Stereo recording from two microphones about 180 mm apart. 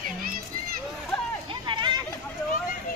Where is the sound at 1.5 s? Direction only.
25° right (ahead or behind).